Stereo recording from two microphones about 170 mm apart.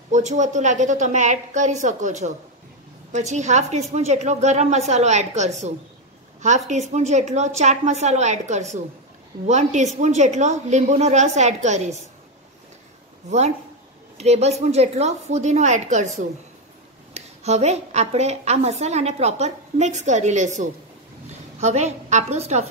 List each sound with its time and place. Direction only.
0.1 s a woman's voice: 45° right (ahead or behind)
13.3 s a woman's voice: 40° right (ahead or behind)